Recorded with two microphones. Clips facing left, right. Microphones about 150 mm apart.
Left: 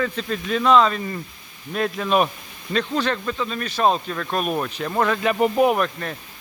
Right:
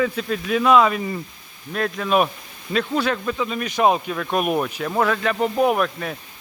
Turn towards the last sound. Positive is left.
turn(degrees=-5)  # may be behind; listen again after turning